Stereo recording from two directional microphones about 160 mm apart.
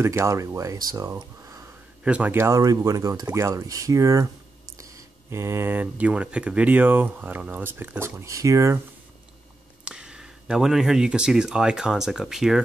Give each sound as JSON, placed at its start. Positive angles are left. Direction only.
{"t": 0.0, "sound": "speech", "side_deg": -15}
{"t": 2.0, "sound": "speech", "side_deg": -10}
{"t": 9.8, "sound": "speech", "side_deg": -5}